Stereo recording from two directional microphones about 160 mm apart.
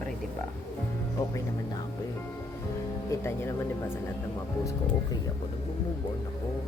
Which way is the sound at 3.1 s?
15° left (ahead or behind).